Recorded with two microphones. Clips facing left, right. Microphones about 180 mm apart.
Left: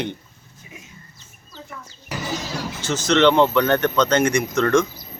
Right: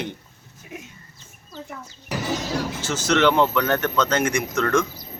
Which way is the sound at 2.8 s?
10° right (ahead or behind).